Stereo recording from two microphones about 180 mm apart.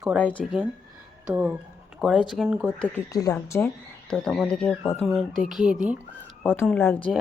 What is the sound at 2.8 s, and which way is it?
Speech, 15° left (ahead or behind).